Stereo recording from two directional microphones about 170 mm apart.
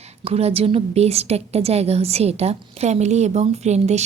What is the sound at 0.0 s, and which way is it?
A woman's voice, 40° right (ahead or behind).